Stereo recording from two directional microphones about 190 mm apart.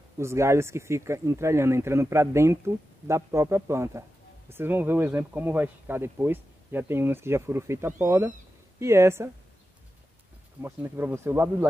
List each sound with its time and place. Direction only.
0.2 s speech: 15° right (ahead or behind)
10.6 s speech: 10° right (ahead or behind)